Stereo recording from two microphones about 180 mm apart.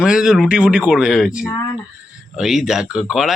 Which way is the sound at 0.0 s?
5° right (ahead or behind).